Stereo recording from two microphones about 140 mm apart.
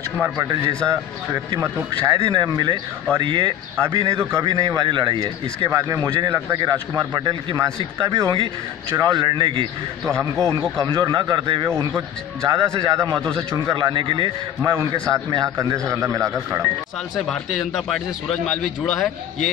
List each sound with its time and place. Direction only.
0.8 s speech: 25° right (ahead or behind)
10.0 s a man's voice: 5° left (ahead or behind)
10.4 s speech: 25° right (ahead or behind)
14.6 s speech: 20° right (ahead or behind)
17.1 s a man's voice: centre (ahead or behind)